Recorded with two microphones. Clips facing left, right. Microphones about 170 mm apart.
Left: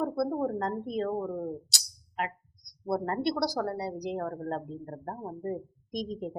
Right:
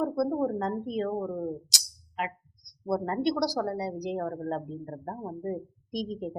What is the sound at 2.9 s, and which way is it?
Speech, 15° right (ahead or behind).